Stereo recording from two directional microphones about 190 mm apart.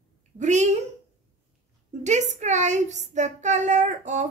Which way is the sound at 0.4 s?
40° right (ahead or behind).